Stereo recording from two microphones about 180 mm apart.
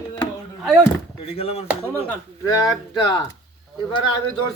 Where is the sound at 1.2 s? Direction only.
35° left (ahead or behind).